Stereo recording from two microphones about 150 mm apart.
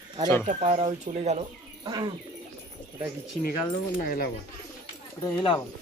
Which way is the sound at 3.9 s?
75° left (ahead or behind).